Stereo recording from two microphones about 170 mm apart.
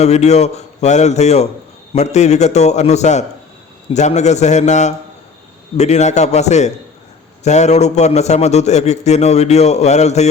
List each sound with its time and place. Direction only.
0.0 s a man's voice: 40° left (ahead or behind)